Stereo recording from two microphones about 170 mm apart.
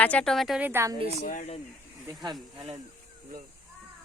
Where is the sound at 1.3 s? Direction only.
50° left (ahead or behind).